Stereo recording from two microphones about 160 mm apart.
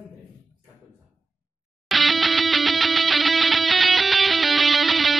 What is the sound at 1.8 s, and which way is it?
Music, centre (ahead or behind).